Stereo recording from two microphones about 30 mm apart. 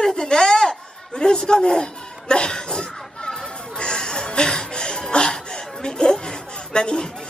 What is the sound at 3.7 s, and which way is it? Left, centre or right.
Chuckle, left.